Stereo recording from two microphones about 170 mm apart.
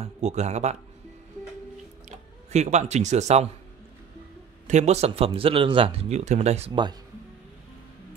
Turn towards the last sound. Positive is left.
turn(degrees=-25)  # may be behind; listen again after turning